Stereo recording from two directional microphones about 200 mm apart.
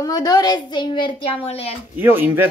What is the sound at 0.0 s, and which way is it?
A woman's voice, 20° left (ahead or behind).